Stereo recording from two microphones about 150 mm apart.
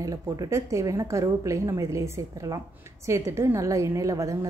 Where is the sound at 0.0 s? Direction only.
25° right (ahead or behind).